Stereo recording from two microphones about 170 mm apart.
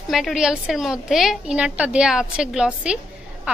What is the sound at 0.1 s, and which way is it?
A woman's voice, centre (ahead or behind).